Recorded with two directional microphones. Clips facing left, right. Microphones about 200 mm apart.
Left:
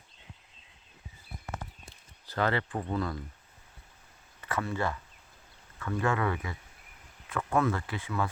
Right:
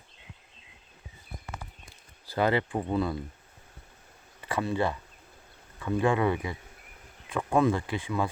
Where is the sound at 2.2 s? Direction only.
10° right (ahead or behind).